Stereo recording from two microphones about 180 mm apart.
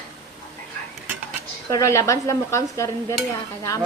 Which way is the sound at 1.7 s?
15° left (ahead or behind).